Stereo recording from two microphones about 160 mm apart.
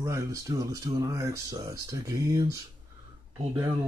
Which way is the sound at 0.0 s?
20° right (ahead or behind).